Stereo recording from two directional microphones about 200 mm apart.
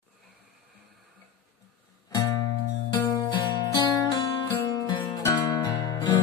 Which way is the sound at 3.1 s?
20° left (ahead or behind).